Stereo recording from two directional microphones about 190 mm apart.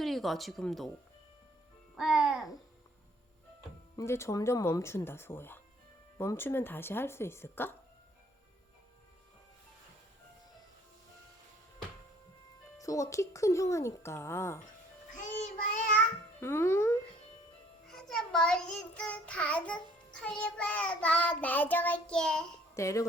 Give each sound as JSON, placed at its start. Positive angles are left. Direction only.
{"t": 0.0, "sound": "speech", "side_deg": 0}
{"t": 2.0, "sound": "music", "side_deg": -5}
{"t": 3.9, "sound": "child singing", "side_deg": 15}
{"t": 12.8, "sound": "child singing", "side_deg": 15}
{"t": 15.1, "sound": "music", "side_deg": 40}
{"t": 16.0, "sound": "babbling", "side_deg": 15}
{"t": 17.8, "sound": "child singing", "side_deg": 0}
{"t": 22.7, "sound": "speech", "side_deg": 15}